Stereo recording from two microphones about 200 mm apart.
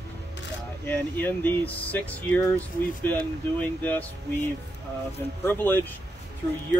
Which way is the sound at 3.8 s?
10° left (ahead or behind).